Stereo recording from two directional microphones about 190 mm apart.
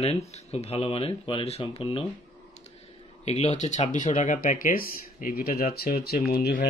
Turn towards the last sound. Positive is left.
turn(degrees=50)  # may be behind; listen again after turning